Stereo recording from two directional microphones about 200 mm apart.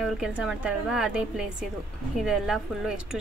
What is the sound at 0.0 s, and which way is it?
A woman's voice, centre (ahead or behind).